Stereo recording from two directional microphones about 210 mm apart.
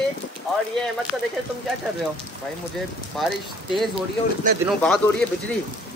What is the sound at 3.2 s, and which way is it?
Speech, centre (ahead or behind).